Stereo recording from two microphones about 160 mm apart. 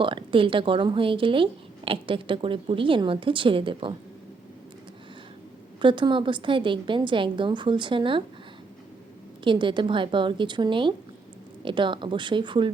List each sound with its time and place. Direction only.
0.0 s a woman's voice: 30° right (ahead or behind)
5.8 s a woman's voice: 30° right (ahead or behind)
9.4 s a woman's voice: 30° right (ahead or behind)